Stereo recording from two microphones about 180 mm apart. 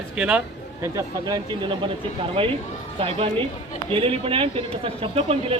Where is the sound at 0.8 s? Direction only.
15° right (ahead or behind).